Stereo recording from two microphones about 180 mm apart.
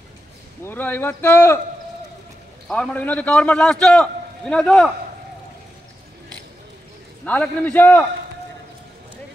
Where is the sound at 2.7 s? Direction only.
5° left (ahead or behind).